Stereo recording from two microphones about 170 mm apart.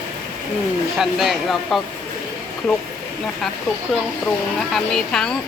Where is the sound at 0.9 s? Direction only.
Centre (ahead or behind).